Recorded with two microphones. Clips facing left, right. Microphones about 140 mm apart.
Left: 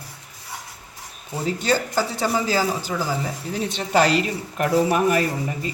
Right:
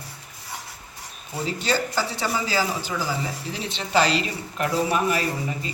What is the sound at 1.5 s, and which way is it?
A man's voice, 45° left (ahead or behind).